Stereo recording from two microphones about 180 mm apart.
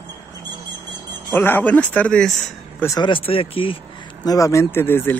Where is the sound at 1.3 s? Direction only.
10° left (ahead or behind).